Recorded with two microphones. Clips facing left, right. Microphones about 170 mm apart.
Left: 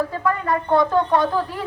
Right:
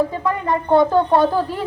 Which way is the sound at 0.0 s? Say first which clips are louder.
Right 2 dB; 20° right (ahead or behind).